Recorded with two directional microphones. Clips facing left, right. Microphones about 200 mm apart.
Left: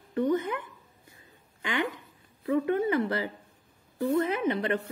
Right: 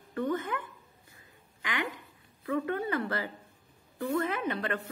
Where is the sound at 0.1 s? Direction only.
20° left (ahead or behind).